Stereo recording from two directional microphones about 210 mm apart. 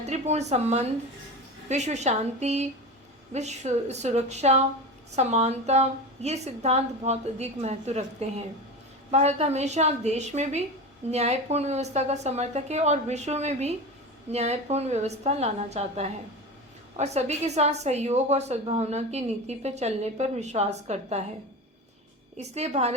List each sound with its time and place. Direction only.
0.0 s a woman's voice: 30° right (ahead or behind)
22.4 s a woman's voice: 30° right (ahead or behind)